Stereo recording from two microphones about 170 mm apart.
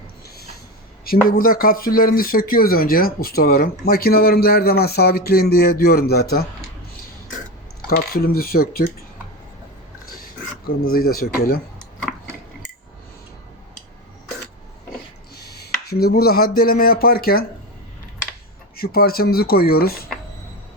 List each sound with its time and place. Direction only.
1.0 s speech: 60° left (ahead or behind)
7.9 s speech: 60° left (ahead or behind)
10.8 s speech: 60° left (ahead or behind)
15.4 s a sound: 70° left (ahead or behind)
18.8 s speech: 60° left (ahead or behind)